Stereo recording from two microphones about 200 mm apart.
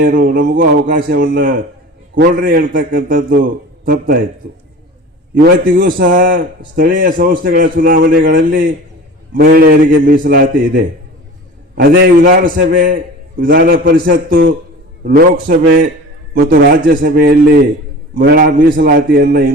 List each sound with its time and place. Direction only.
0.0 s a man's voice: 45° right (ahead or behind)
5.7 s a man's voice: 45° right (ahead or behind)